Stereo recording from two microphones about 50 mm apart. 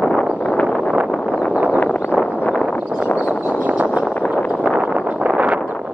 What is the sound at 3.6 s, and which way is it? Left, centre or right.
Vehicle, right.